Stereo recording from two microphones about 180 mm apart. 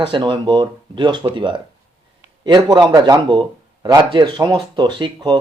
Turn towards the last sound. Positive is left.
turn(degrees=-25)  # may be behind; listen again after turning